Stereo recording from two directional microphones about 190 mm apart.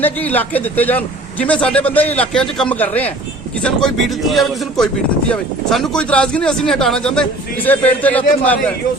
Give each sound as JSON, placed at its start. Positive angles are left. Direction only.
{"t": 0.0, "sound": "a man's voice", "side_deg": 10}